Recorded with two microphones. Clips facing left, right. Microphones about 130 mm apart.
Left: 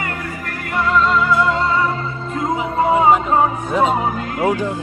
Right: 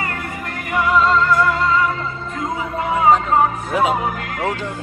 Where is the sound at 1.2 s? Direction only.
20° left (ahead or behind).